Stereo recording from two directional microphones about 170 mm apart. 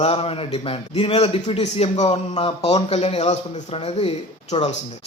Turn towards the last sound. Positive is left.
turn(degrees=35)  # may be behind; listen again after turning